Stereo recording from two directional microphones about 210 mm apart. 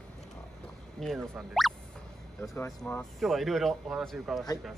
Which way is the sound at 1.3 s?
Centre (ahead or behind).